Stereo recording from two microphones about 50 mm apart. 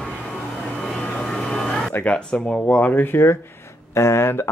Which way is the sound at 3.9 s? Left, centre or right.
Left.